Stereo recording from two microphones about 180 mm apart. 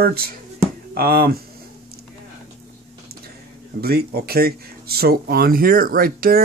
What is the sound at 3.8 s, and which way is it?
Speech, 60° right (ahead or behind).